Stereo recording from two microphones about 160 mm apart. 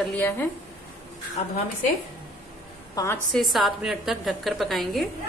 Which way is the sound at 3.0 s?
20° left (ahead or behind).